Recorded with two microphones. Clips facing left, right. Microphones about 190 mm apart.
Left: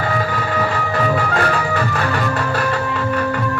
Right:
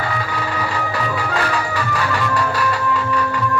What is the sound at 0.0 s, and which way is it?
Music, 45° left (ahead or behind).